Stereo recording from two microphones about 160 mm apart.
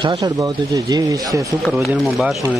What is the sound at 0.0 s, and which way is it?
Speech, 25° right (ahead or behind).